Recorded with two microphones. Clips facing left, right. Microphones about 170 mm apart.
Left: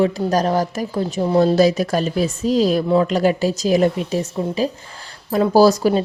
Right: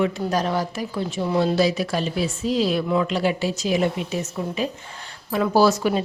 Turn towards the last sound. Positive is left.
turn(degrees=35)  # may be behind; listen again after turning